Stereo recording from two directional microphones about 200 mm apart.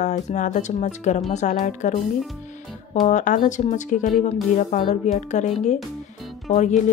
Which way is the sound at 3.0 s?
40° left (ahead or behind).